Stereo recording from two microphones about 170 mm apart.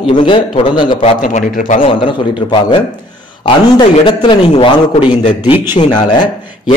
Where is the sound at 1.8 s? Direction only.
30° left (ahead or behind).